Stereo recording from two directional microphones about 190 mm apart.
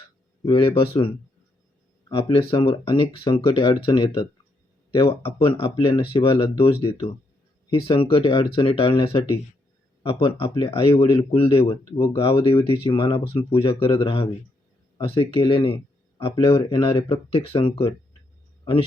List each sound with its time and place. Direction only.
0.4 s speech: 25° left (ahead or behind)